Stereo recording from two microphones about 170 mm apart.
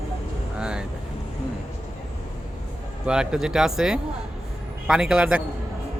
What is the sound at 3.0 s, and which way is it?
Speech, 5° right (ahead or behind).